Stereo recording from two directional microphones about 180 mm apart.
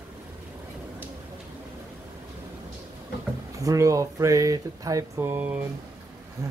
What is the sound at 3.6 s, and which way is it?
Speech, 15° right (ahead or behind).